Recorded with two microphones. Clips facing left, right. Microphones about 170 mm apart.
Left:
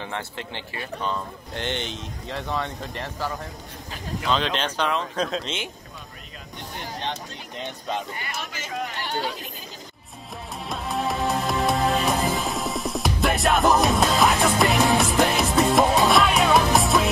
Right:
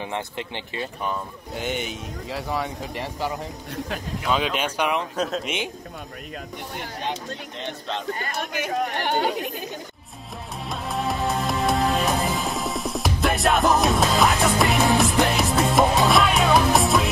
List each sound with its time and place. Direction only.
0.0 s speech: 15° right (ahead or behind)
8.2 s speech: 55° right (ahead or behind)
10.7 s music: centre (ahead or behind)